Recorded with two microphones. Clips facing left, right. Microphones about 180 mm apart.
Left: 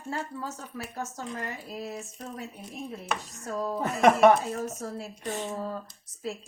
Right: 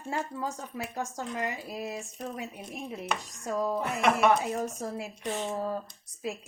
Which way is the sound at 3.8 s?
40° left (ahead or behind).